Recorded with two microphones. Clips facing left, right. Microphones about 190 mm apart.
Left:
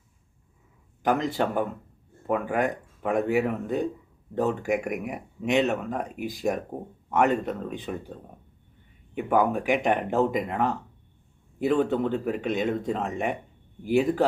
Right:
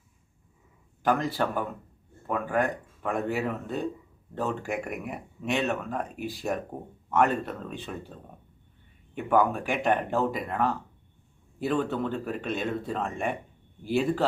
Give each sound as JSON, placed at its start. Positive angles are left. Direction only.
{"t": 1.0, "sound": "speech", "side_deg": 20}
{"t": 9.1, "sound": "speech", "side_deg": 15}